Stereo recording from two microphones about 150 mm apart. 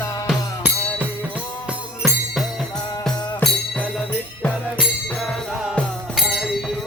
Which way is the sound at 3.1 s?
30° left (ahead or behind).